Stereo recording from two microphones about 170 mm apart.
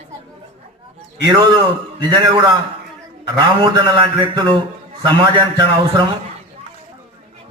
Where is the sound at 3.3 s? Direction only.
30° right (ahead or behind).